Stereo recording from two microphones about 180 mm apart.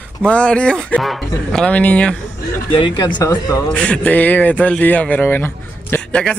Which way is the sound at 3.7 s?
5° left (ahead or behind).